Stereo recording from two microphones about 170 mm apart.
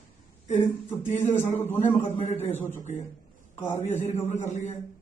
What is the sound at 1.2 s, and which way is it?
Speech, 15° left (ahead or behind).